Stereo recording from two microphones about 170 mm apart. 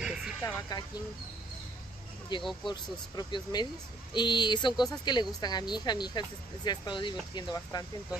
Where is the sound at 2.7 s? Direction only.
25° left (ahead or behind).